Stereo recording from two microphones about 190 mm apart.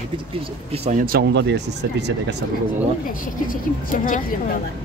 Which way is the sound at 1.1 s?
65° right (ahead or behind).